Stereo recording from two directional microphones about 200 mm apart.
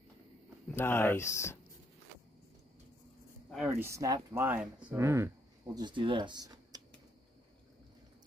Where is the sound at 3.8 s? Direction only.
15° right (ahead or behind).